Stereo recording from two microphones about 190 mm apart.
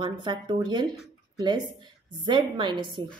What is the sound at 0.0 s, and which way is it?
Speech, 25° right (ahead or behind).